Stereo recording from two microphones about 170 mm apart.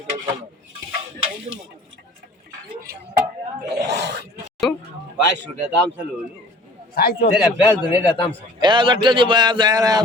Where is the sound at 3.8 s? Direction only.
85° right.